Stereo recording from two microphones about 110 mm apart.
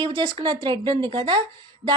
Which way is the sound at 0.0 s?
50° right (ahead or behind).